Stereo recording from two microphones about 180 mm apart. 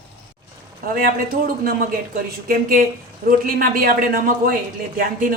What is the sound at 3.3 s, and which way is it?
A man's voice, 50° right (ahead or behind).